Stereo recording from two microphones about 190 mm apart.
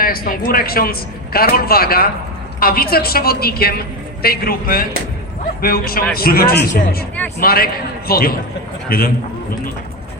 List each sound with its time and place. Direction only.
0.0 s a man's voice: 50° left (ahead or behind)